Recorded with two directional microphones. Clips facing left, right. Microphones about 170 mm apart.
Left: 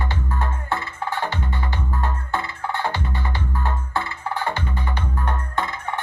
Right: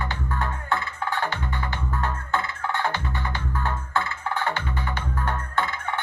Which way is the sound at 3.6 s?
20° left (ahead or behind).